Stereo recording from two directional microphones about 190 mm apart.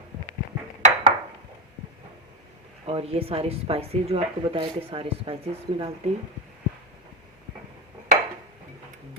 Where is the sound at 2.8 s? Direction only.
30° right (ahead or behind).